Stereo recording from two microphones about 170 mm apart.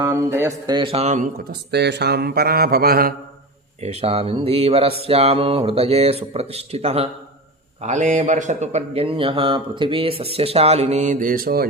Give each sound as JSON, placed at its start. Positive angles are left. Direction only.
{"t": 0.0, "sound": "speech", "side_deg": -15}
{"t": 0.8, "sound": "a man's voice", "side_deg": -35}
{"t": 1.7, "sound": "speech", "side_deg": -80}
{"t": 3.8, "sound": "a man's voice", "side_deg": -35}